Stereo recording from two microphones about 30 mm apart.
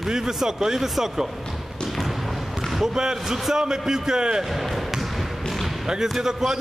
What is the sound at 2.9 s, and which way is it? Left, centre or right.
A man's voice, centre.